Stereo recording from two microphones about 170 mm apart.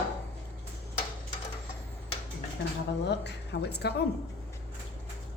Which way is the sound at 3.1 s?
80° left.